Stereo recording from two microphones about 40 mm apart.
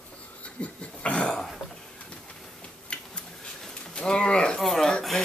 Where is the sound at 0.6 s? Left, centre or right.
Left.